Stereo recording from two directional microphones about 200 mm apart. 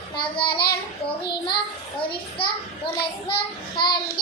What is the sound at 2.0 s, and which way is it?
A child's voice, 25° left (ahead or behind).